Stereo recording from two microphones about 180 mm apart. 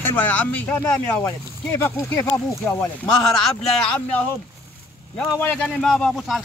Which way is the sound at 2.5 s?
15° left (ahead or behind).